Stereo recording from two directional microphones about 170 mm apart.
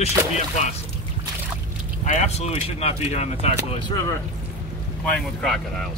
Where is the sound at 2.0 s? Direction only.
40° left (ahead or behind).